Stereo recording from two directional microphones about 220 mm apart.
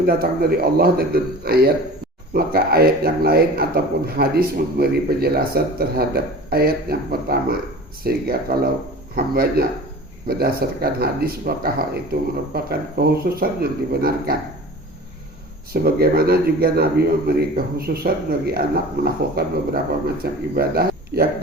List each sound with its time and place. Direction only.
0.0 s speech: 45° right (ahead or behind)
15.7 s speech: 45° right (ahead or behind)